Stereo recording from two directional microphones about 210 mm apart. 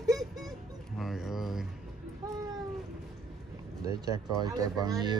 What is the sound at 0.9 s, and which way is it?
Speech, centre (ahead or behind).